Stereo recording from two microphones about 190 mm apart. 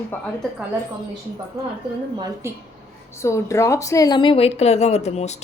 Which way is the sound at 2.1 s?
20° right (ahead or behind).